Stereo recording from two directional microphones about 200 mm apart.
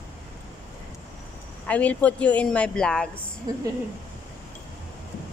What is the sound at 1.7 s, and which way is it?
A woman's voice, 5° left (ahead or behind).